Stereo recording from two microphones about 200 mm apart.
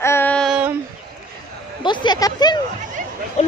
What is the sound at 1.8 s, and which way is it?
Speech, 25° left (ahead or behind).